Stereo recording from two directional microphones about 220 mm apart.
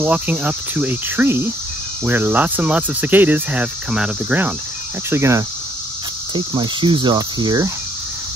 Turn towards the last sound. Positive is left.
turn(degrees=-20)  # may be behind; listen again after turning